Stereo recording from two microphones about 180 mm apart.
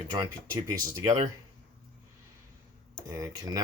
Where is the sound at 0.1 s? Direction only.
20° right (ahead or behind).